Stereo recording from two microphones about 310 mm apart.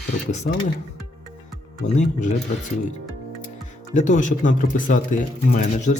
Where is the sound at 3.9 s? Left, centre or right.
Left.